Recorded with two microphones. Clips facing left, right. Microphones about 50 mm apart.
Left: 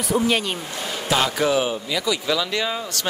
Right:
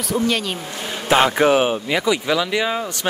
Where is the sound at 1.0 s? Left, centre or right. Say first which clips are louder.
Right 6 dB; right.